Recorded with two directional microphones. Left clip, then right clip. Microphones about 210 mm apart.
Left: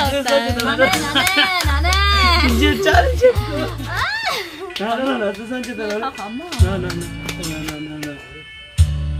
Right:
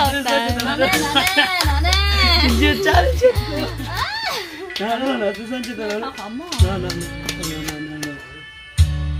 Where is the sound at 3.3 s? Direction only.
10° left (ahead or behind).